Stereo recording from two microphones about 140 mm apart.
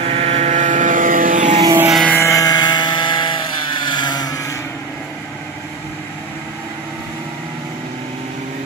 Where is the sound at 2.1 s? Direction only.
20° left (ahead or behind).